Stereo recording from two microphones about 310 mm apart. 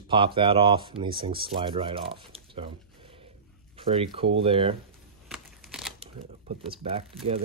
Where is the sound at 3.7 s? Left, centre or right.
Centre.